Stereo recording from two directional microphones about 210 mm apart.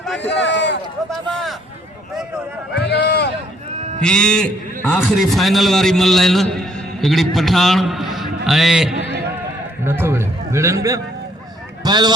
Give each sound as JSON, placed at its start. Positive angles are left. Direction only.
{"t": 0.2, "sound": "speech", "side_deg": 55}
{"t": 1.1, "sound": "a sound", "side_deg": 0}
{"t": 2.7, "sound": "run", "side_deg": 50}
{"t": 4.0, "sound": "a man's voice", "side_deg": 5}
{"t": 11.8, "sound": "speech", "side_deg": -20}